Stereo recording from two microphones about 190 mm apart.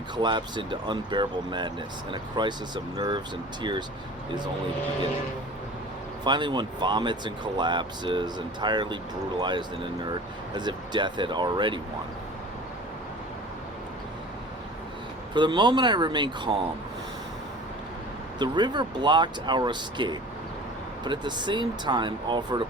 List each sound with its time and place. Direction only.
0.2 s speech: 25° right (ahead or behind)
6.2 s speech: 25° right (ahead or behind)
15.4 s speech: 25° right (ahead or behind)
18.3 s speech: 25° right (ahead or behind)